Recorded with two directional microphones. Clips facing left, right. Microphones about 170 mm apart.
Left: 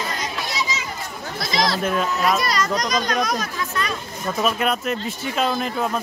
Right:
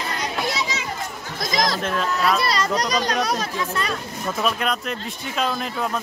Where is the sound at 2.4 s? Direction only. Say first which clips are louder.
Even; 30° right (ahead or behind).